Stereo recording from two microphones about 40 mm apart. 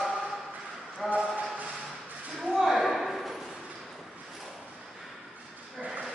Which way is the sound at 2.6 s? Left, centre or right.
Centre.